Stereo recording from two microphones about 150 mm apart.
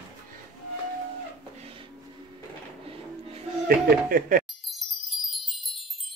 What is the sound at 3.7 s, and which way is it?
Speech, 80° right.